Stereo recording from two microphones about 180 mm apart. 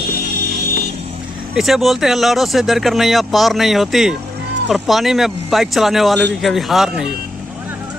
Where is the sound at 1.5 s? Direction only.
Centre (ahead or behind).